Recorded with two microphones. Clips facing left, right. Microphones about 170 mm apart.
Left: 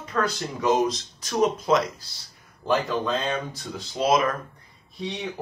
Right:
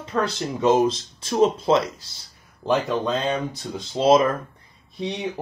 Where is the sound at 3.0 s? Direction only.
25° right (ahead or behind).